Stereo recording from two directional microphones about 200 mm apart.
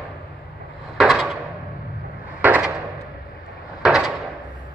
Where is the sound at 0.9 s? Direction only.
Centre (ahead or behind).